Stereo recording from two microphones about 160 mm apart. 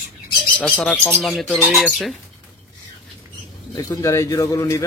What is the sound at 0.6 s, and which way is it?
Speech, 5° left (ahead or behind).